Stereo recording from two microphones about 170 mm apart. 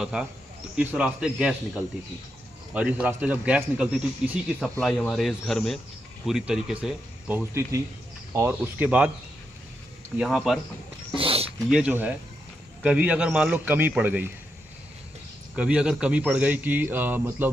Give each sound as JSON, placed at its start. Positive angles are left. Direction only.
{"t": 0.0, "sound": "a man's voice", "side_deg": -5}
{"t": 10.1, "sound": "a man's voice", "side_deg": 0}
{"t": 11.1, "sound": "a sound", "side_deg": -35}
{"t": 11.7, "sound": "speech", "side_deg": -10}
{"t": 15.5, "sound": "speech", "side_deg": -5}